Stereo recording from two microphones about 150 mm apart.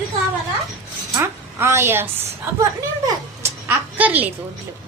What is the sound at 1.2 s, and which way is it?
Speech, 15° right (ahead or behind).